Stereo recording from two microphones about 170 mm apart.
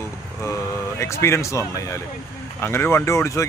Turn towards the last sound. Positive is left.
turn(degrees=15)  # may be behind; listen again after turning